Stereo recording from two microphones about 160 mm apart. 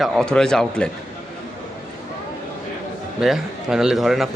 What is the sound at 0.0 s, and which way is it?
Speech, 5° left (ahead or behind).